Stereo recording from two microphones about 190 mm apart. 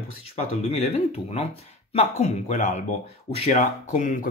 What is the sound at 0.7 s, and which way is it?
Speech, 35° left (ahead or behind).